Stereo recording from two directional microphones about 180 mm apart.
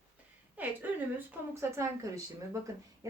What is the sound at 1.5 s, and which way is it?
A woman's voice, 15° right (ahead or behind).